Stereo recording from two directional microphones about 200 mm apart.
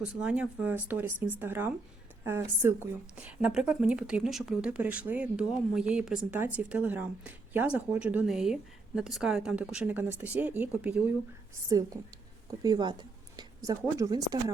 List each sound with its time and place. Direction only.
0.0 s a woman's voice: 5° right (ahead or behind)